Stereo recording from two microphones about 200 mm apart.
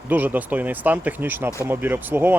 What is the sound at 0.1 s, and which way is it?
Speech, 10° right (ahead or behind).